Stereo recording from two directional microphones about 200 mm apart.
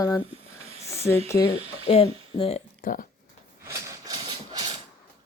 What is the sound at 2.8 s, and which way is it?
Speech, 45° left (ahead or behind).